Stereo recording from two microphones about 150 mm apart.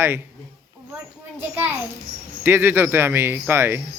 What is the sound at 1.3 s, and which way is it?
A man's voice, 15° right (ahead or behind).